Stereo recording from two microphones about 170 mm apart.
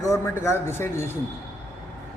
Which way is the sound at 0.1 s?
15° left (ahead or behind).